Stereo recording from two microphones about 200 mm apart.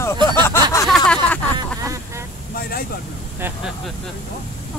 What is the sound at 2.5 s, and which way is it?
Speech, 50° left (ahead or behind).